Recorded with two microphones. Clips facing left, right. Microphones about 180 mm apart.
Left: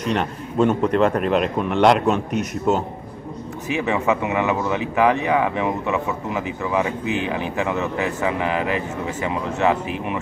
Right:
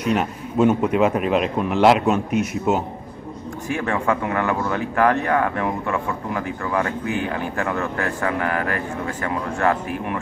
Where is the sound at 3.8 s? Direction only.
5° left (ahead or behind).